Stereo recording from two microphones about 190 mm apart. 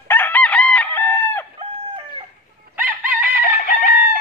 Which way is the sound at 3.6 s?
45° left (ahead or behind).